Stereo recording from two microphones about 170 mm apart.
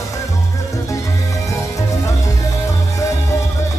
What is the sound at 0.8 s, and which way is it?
Music, 20° left (ahead or behind).